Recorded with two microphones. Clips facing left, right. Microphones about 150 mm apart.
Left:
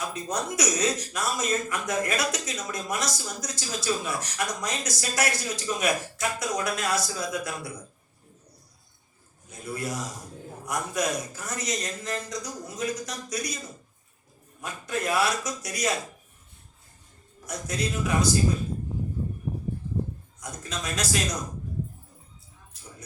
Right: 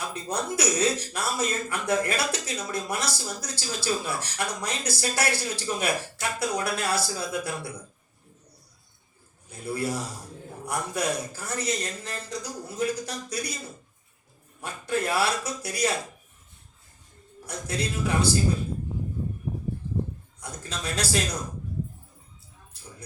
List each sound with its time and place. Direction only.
0.0 s speech: 30° right (ahead or behind)
9.5 s speech: 30° right (ahead or behind)
14.6 s speech: 30° right (ahead or behind)
17.4 s speech: 30° right (ahead or behind)
20.4 s speech: 30° right (ahead or behind)